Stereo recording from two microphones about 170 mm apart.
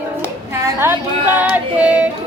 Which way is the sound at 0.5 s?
15° right (ahead or behind).